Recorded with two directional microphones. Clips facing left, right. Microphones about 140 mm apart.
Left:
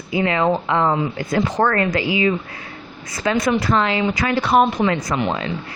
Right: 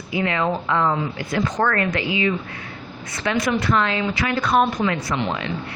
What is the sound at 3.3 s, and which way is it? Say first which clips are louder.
A woman's voice: left 3 dB; 30° left (ahead or behind).